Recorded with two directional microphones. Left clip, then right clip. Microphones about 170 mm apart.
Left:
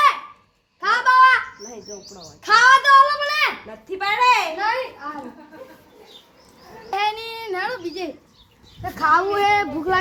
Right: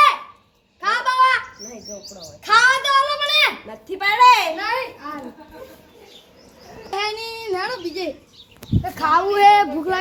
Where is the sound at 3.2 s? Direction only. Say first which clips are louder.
Right 3 dB; 45° right (ahead or behind).